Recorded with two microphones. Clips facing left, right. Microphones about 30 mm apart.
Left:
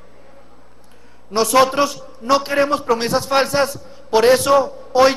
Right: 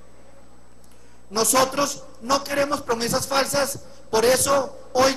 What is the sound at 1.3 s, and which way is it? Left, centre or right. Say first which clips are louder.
A man's voice: left 6 dB; left.